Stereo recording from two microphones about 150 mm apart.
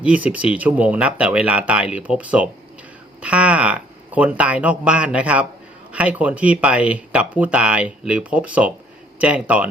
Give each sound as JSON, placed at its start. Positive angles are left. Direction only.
{"t": 0.0, "sound": "speech", "side_deg": -10}